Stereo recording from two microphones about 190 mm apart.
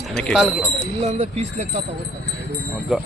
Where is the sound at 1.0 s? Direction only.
35° right (ahead or behind).